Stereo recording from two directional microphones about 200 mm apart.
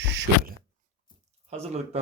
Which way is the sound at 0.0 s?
60° right (ahead or behind).